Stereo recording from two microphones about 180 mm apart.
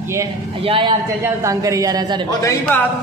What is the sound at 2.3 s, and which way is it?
Speech, 15° left (ahead or behind).